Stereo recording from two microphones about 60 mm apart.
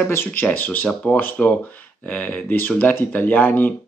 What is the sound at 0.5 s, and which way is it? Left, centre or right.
Speech, left.